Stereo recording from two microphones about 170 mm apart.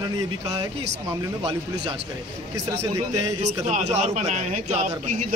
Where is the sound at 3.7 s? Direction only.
45° right (ahead or behind).